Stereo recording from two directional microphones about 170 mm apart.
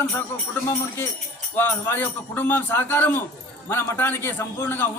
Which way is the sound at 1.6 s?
10° left (ahead or behind).